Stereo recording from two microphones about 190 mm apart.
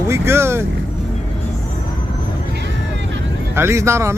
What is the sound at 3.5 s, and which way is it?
Speech, 15° right (ahead or behind).